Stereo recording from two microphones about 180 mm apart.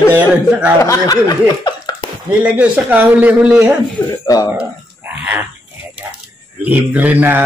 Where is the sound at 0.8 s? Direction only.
20° left (ahead or behind).